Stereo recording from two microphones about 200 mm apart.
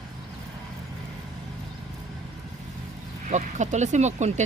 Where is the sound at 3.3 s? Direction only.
35° right (ahead or behind).